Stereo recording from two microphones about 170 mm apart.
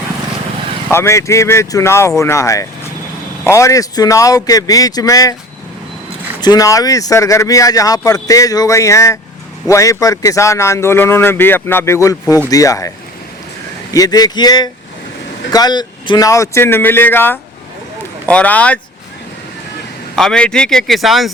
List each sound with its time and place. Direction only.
0.9 s a man's voice: 15° left (ahead or behind)
6.4 s a man's voice: 20° left (ahead or behind)
13.9 s a man's voice: 20° left (ahead or behind)
20.1 s a man's voice: 5° left (ahead or behind)